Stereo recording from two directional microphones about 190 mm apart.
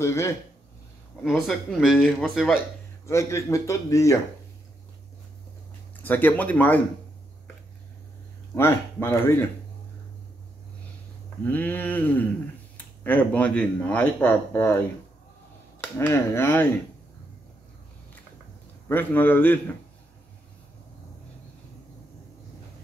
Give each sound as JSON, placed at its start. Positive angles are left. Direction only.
{"t": 0.0, "sound": "speech", "side_deg": 15}
{"t": 1.2, "sound": "speech", "side_deg": 0}
{"t": 3.1, "sound": "speech", "side_deg": 15}
{"t": 6.0, "sound": "speech", "side_deg": 10}
{"t": 8.5, "sound": "speech", "side_deg": 10}
{"t": 11.4, "sound": "speech", "side_deg": 10}
{"t": 15.8, "sound": "speech", "side_deg": 10}
{"t": 18.9, "sound": "speech", "side_deg": 10}